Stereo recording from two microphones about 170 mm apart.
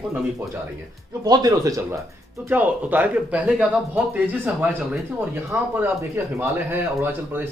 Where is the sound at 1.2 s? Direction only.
25° right (ahead or behind).